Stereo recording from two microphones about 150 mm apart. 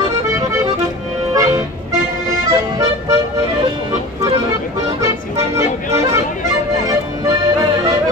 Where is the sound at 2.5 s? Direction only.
25° right (ahead or behind).